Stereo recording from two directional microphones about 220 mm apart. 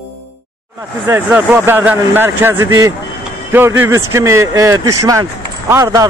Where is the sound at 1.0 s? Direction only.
10° right (ahead or behind).